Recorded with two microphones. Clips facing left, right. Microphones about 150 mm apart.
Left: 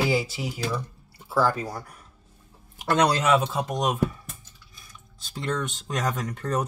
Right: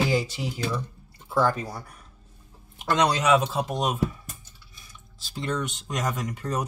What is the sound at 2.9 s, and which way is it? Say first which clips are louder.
Speech: even; 5° left (ahead or behind).